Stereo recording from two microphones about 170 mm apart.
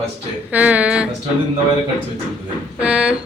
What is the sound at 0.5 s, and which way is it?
Speech, 10° right (ahead or behind).